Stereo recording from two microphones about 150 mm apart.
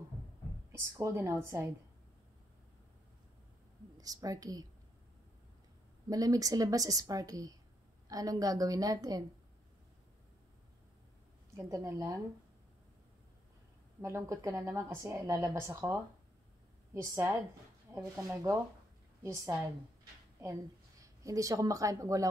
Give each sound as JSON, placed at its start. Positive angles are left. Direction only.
{"t": 0.7, "sound": "a woman's voice", "side_deg": -20}
{"t": 4.0, "sound": "a woman's voice", "side_deg": -25}
{"t": 6.0, "sound": "a woman's voice", "side_deg": -25}
{"t": 11.5, "sound": "a woman's voice", "side_deg": -20}
{"t": 14.0, "sound": "a woman's voice", "side_deg": -20}
{"t": 21.0, "sound": "a woman's voice", "side_deg": -20}